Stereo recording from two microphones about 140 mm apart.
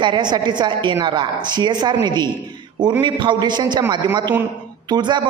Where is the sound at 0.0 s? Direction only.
35° right (ahead or behind).